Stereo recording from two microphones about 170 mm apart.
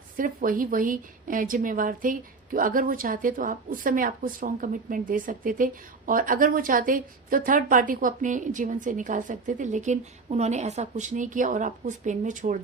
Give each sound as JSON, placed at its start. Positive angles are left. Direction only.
{"t": 0.2, "sound": "a woman's voice", "side_deg": -55}